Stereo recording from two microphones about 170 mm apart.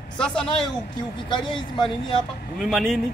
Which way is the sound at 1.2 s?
25° left (ahead or behind).